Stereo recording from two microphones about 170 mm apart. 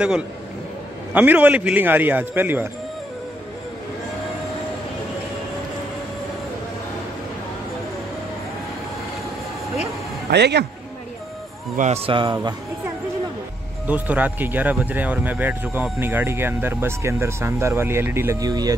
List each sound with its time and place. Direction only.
1.1 s speech: 10° right (ahead or behind)
10.3 s speech: 80° right
11.7 s speech: 45° right (ahead or behind)
12.1 s speech: 30° right (ahead or behind)
13.8 s speech: 10° right (ahead or behind)